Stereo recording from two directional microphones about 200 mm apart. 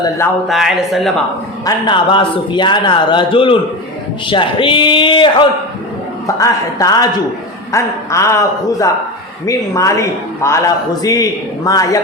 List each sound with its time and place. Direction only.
0.4 s a man's voice: centre (ahead or behind)
1.6 s a man's voice: 25° left (ahead or behind)